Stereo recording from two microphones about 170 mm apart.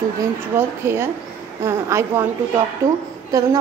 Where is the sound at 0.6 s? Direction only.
15° right (ahead or behind).